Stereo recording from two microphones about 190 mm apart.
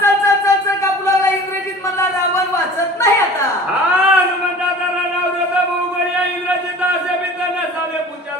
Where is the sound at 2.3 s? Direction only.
15° left (ahead or behind).